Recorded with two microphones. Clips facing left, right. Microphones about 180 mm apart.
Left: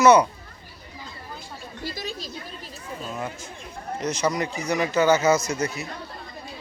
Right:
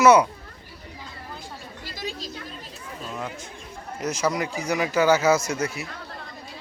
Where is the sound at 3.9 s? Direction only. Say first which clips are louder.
Even; 5° right (ahead or behind).